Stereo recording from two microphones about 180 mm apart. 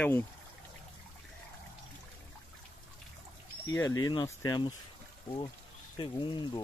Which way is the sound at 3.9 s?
20° left (ahead or behind).